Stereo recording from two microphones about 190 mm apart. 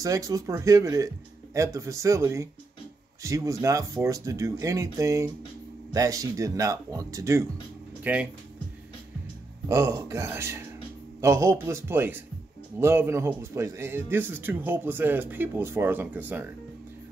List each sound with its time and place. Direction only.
0.0 s speech: 15° right (ahead or behind)
9.7 s speech: 20° right (ahead or behind)